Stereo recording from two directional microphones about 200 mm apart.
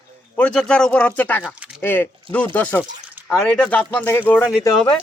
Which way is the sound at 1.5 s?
5° right (ahead or behind).